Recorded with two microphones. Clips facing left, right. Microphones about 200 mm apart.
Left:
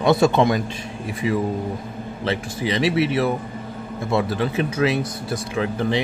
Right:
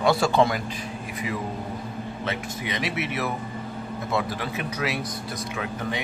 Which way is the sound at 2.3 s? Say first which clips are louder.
Left 8 dB; 30° left (ahead or behind).